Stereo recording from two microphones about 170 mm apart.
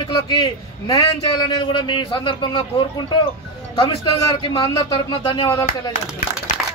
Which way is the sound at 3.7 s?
35° left (ahead or behind).